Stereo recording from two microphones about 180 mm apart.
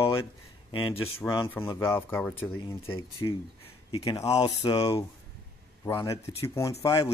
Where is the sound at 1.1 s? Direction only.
30° left (ahead or behind).